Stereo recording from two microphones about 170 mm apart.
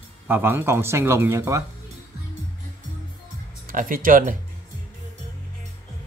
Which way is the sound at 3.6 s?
55° right (ahead or behind).